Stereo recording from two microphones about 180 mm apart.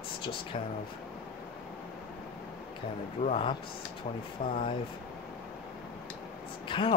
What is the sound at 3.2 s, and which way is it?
Speech, 35° left (ahead or behind).